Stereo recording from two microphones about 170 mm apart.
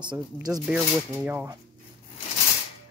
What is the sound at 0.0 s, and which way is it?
Speech, 25° right (ahead or behind).